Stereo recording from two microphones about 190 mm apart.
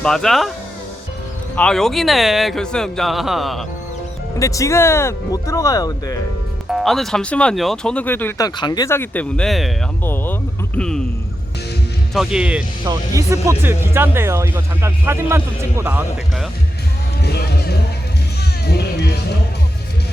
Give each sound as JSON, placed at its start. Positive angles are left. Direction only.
{"t": 0.0, "sound": "speech", "side_deg": 5}
{"t": 1.5, "sound": "speech", "side_deg": 5}
{"t": 4.4, "sound": "speech", "side_deg": 15}
{"t": 6.7, "sound": "speech", "side_deg": 0}
{"t": 10.0, "sound": "speech", "side_deg": 10}
{"t": 12.1, "sound": "speech", "side_deg": -5}
{"t": 12.8, "sound": "speech", "side_deg": -20}
{"t": 17.2, "sound": "music", "side_deg": 60}